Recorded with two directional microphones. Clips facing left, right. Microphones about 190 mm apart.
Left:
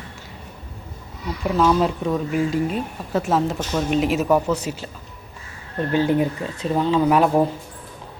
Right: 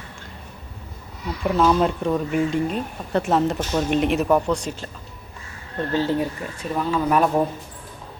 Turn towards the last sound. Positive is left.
turn(degrees=15)  # may be behind; listen again after turning